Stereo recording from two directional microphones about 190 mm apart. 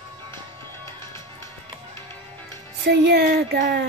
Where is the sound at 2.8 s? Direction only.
60° right (ahead or behind).